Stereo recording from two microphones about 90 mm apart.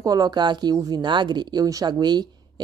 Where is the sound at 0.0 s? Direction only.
45° right (ahead or behind).